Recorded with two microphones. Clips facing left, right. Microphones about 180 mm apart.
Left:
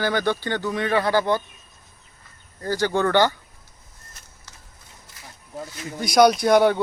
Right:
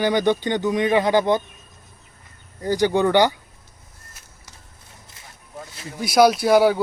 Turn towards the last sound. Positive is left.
turn(degrees=-5)  # may be behind; listen again after turning